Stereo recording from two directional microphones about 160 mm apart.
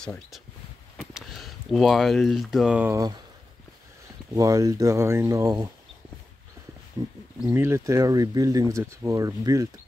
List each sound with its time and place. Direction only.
0.0 s speech: 5° left (ahead or behind)
2.9 s speech: 20° right (ahead or behind)
4.4 s speech: 20° right (ahead or behind)
7.0 s speech: 25° right (ahead or behind)